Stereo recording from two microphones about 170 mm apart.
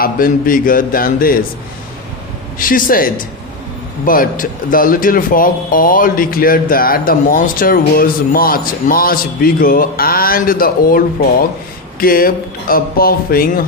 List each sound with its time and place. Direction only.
0.0 s speech: 55° left (ahead or behind)
2.6 s speech: 55° left (ahead or behind)